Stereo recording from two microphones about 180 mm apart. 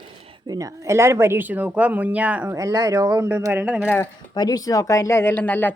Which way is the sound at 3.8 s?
10° left (ahead or behind).